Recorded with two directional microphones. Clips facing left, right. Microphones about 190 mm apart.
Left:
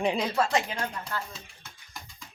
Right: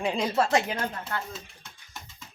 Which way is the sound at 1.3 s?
Centre (ahead or behind).